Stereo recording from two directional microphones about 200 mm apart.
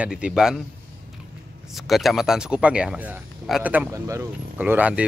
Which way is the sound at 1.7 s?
Centre (ahead or behind).